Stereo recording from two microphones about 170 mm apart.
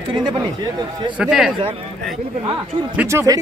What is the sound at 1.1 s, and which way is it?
Speech, 5° right (ahead or behind).